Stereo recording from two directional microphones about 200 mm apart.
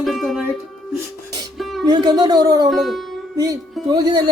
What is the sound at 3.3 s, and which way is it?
Music, 15° right (ahead or behind).